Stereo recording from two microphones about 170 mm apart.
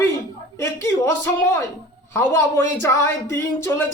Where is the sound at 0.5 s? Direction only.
15° left (ahead or behind).